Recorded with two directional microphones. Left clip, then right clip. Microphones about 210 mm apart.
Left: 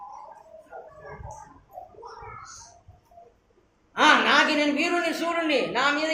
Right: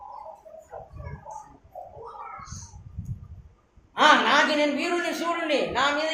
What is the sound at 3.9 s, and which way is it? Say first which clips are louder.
A man's voice: even; 20° left (ahead or behind).